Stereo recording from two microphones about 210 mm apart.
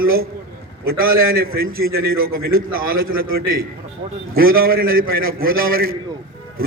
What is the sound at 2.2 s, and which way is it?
A man's voice, 45° right (ahead or behind).